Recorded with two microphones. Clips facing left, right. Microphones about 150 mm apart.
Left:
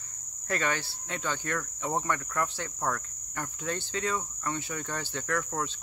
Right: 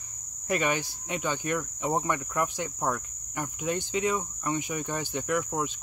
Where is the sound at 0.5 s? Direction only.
15° right (ahead or behind).